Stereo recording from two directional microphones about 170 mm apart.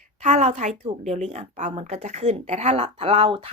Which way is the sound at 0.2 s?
45° right (ahead or behind).